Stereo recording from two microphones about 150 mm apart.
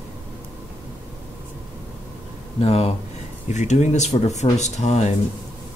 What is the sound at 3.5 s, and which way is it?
Speech, 50° left (ahead or behind).